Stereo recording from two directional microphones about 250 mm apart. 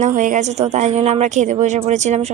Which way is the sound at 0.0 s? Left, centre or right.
Right.